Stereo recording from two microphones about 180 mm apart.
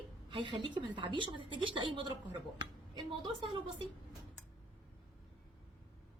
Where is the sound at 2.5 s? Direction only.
25° right (ahead or behind).